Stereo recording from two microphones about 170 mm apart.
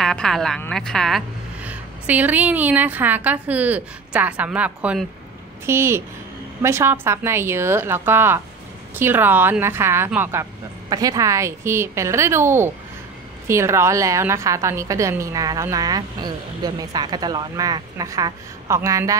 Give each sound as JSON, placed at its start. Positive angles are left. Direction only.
{"t": 0.0, "sound": "a woman's voice", "side_deg": 5}